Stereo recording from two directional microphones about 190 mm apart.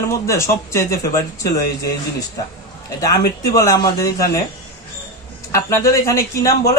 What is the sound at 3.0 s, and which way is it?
Speech, 15° left (ahead or behind).